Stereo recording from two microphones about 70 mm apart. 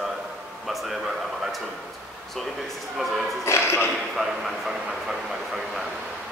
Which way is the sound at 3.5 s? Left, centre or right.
Left.